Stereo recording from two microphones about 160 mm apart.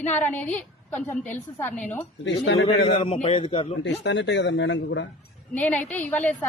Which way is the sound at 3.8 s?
90° left.